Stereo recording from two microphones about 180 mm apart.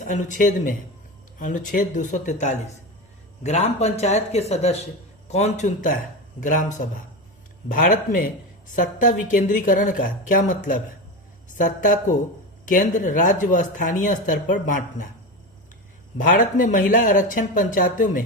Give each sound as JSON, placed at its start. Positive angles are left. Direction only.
{"t": 0.0, "sound": "speech", "side_deg": 45}
{"t": 16.1, "sound": "speech", "side_deg": 45}